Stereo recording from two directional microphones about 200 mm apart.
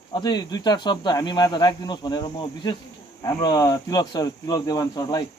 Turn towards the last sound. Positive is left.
turn(degrees=20)  # may be behind; listen again after turning